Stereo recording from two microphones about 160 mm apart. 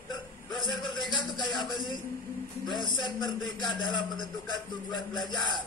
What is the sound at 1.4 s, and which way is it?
Speech, 30° left (ahead or behind).